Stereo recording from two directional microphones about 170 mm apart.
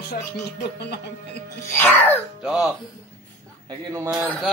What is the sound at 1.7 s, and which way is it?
Speech, 10° left (ahead or behind).